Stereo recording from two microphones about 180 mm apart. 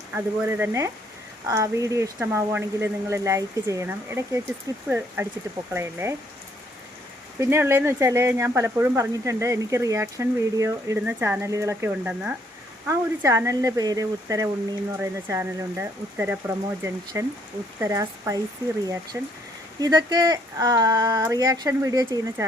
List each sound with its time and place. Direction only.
0.1 s speech: 15° right (ahead or behind)
7.3 s speech: 15° right (ahead or behind)
17.7 s speech: 15° right (ahead or behind)